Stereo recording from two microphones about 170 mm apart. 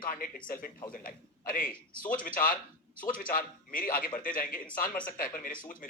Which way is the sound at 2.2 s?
55° left (ahead or behind).